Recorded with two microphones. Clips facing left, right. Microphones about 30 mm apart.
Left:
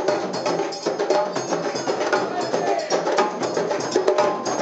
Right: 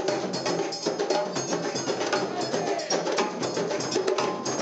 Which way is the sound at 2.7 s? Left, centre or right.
Centre.